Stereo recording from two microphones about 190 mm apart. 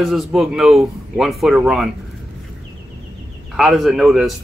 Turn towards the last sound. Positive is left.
turn(degrees=0)  # may be behind; listen again after turning